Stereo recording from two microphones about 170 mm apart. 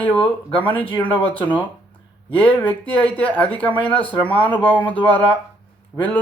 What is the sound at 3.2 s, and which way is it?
Speech, 10° left (ahead or behind).